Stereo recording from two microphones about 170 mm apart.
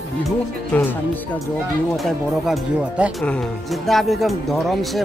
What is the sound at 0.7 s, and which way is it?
Speech, 10° left (ahead or behind).